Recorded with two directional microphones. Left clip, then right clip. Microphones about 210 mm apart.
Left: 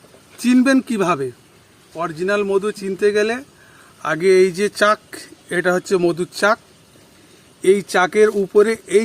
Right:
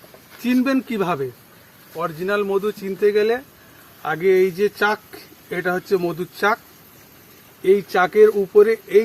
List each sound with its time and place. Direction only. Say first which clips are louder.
0.4 s speech: left 5 dB; 55° left (ahead or behind)
7.6 s speech: left 1 dB; 55° left (ahead or behind)